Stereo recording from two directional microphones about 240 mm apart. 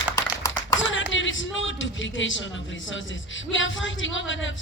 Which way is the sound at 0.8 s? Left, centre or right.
Left.